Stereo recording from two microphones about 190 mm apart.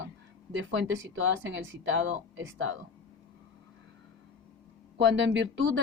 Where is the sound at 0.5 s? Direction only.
85° right.